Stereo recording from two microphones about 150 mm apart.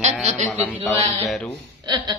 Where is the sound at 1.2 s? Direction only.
5° left (ahead or behind).